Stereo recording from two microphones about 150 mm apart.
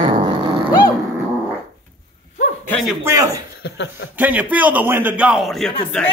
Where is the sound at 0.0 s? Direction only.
35° right (ahead or behind).